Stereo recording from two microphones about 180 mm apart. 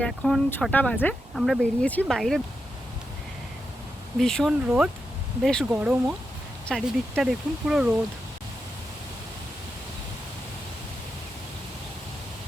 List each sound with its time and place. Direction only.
0.0 s speech: 5° left (ahead or behind)
4.2 s speech: 5° left (ahead or behind)
5.7 s speech: 10° right (ahead or behind)